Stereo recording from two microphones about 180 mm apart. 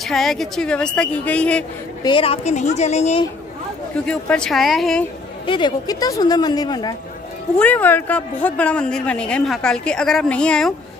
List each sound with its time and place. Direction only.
0.0 s speech: centre (ahead or behind)
2.0 s a woman's voice: 30° left (ahead or behind)
4.0 s speech: 5° left (ahead or behind)
5.5 s a woman's voice: 25° left (ahead or behind)
7.5 s speech: 10° left (ahead or behind)